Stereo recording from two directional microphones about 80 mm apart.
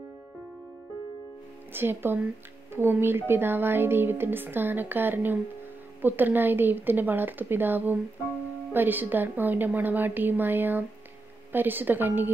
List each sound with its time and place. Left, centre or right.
1.7 s speech: right